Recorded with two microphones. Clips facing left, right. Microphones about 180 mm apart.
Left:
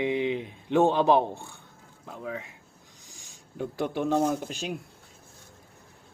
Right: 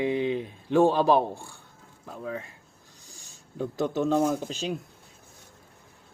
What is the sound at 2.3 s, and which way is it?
Speech, 15° left (ahead or behind).